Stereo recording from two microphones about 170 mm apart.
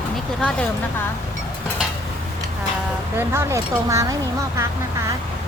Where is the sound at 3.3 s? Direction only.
15° right (ahead or behind).